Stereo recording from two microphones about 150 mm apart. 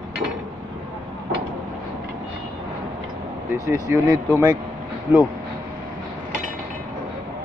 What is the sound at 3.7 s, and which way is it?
Speech, 20° right (ahead or behind).